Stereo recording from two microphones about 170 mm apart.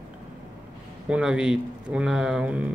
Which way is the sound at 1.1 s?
5° right (ahead or behind).